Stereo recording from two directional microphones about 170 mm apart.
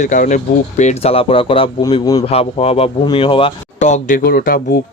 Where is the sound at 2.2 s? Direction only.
35° left (ahead or behind).